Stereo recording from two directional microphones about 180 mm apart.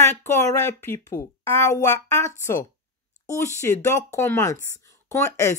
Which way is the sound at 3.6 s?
15° left (ahead or behind).